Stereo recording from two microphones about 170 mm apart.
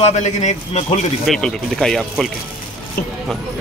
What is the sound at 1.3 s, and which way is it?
Speech, centre (ahead or behind).